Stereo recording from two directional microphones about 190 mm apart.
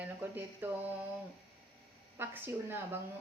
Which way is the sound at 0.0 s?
10° right (ahead or behind).